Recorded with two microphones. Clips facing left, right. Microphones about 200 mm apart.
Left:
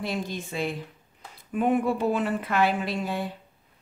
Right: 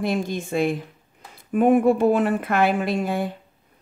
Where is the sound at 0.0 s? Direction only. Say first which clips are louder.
Right 6 dB; 50° right (ahead or behind).